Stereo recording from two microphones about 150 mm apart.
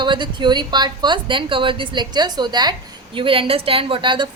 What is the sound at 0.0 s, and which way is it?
A woman's voice, 30° right (ahead or behind).